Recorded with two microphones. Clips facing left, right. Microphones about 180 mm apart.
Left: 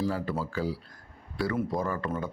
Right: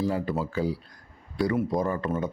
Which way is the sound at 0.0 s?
20° right (ahead or behind).